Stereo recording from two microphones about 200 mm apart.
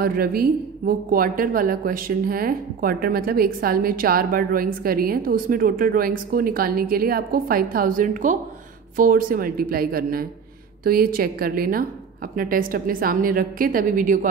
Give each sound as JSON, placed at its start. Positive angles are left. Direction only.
{"t": 0.0, "sound": "a woman's voice", "side_deg": -50}